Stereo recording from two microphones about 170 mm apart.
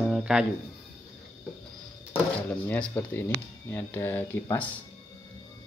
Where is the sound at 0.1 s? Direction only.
5° right (ahead or behind).